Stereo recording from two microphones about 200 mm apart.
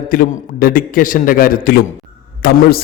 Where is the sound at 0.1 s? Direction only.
45° left (ahead or behind).